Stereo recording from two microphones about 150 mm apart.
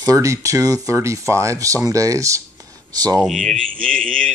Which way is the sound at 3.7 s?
65° right (ahead or behind).